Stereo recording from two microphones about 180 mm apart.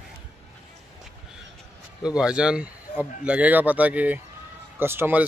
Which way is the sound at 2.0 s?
5° right (ahead or behind).